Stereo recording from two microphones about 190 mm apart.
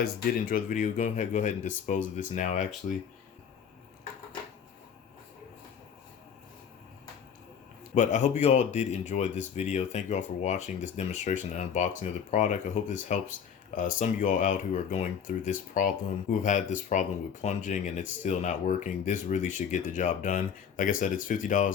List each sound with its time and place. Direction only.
0.0 s speech: 50° left (ahead or behind)
7.9 s speech: 40° left (ahead or behind)